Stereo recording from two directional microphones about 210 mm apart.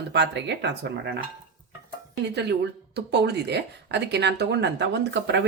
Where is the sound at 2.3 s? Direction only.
55° right (ahead or behind).